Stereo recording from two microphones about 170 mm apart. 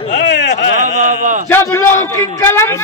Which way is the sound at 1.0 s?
50° right (ahead or behind).